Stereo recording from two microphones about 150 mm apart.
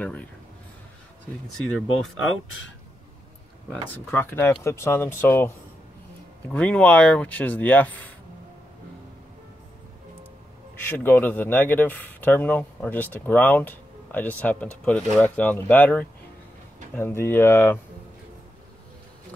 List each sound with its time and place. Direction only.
0.0 s speech: 10° left (ahead or behind)
4.1 s speech: 15° left (ahead or behind)
6.5 s speech: 10° left (ahead or behind)
10.9 s speech: 15° left (ahead or behind)